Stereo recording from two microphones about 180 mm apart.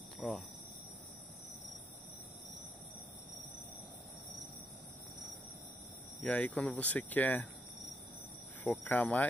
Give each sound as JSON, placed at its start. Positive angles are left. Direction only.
{"t": 0.2, "sound": "cricket", "side_deg": 0}
{"t": 6.2, "sound": "speech", "side_deg": 10}
{"t": 8.6, "sound": "speech", "side_deg": 10}